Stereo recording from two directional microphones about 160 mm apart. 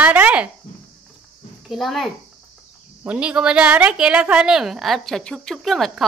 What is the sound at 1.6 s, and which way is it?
A woman's voice, centre (ahead or behind).